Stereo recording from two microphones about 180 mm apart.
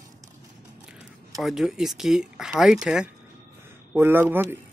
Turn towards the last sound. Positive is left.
turn(degrees=-10)  # may be behind; listen again after turning